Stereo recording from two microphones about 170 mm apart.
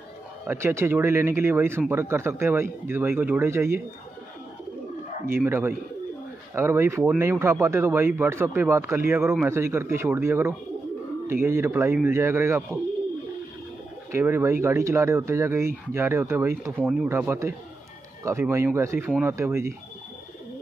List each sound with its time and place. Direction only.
0.5 s speech: 15° right (ahead or behind)
5.2 s speech: 15° right (ahead or behind)
14.1 s speech: 15° right (ahead or behind)